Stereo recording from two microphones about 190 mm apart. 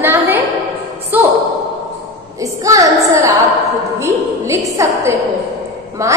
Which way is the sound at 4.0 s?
15° right (ahead or behind).